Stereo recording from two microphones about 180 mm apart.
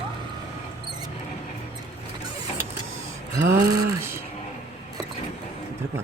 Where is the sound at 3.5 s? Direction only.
20° right (ahead or behind).